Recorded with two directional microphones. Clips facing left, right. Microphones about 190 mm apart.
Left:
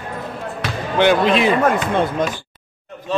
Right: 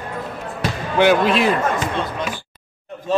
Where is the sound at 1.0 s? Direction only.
5° right (ahead or behind).